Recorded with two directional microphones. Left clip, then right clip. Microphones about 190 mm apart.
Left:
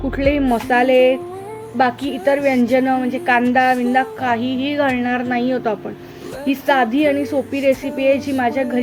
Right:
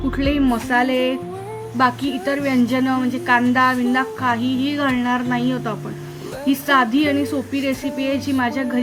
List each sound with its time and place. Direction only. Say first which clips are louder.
0.2 s a woman's voice: left 4 dB; 15° left (ahead or behind)